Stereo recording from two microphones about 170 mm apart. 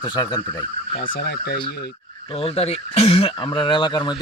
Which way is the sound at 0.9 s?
55° left (ahead or behind).